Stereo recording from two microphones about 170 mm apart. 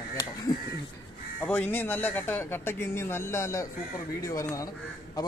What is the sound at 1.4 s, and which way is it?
Speech, 10° left (ahead or behind).